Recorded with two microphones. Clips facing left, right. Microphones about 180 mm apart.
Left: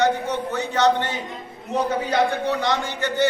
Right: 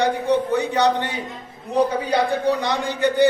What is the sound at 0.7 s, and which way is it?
Speech, 15° right (ahead or behind).